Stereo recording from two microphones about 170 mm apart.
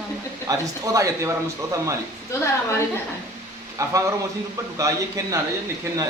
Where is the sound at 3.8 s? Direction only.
20° right (ahead or behind).